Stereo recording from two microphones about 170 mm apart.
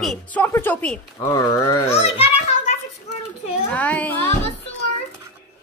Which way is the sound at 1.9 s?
35° left (ahead or behind).